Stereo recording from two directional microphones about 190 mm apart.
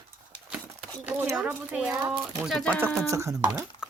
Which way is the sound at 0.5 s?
5° right (ahead or behind).